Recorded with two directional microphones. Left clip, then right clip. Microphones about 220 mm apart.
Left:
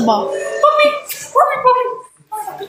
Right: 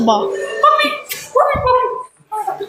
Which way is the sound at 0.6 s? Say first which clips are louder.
Left 1 dB; 30° left (ahead or behind).